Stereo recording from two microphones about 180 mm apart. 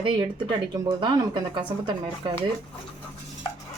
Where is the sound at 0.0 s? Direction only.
25° right (ahead or behind).